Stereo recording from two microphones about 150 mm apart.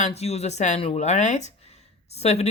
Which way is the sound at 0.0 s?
45° left (ahead or behind).